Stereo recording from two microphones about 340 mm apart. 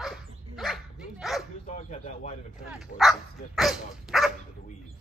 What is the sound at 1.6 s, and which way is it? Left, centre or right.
Speech, centre.